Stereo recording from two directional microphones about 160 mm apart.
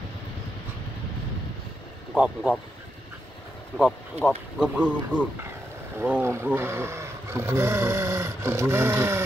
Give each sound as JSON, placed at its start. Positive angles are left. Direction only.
{"t": 2.1, "sound": "speech", "side_deg": -5}
{"t": 4.2, "sound": "speech", "side_deg": 0}